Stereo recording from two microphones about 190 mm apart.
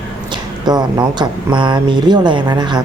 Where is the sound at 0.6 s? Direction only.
20° right (ahead or behind).